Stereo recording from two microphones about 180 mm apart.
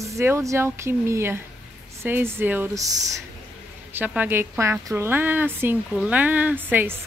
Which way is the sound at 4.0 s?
10° right (ahead or behind).